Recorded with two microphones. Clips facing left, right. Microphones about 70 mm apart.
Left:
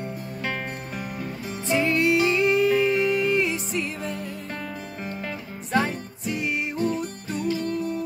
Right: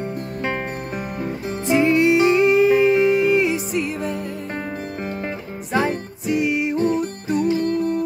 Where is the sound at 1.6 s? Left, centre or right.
Centre.